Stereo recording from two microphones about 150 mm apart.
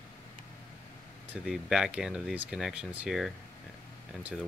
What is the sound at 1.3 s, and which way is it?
Speech, 5° right (ahead or behind).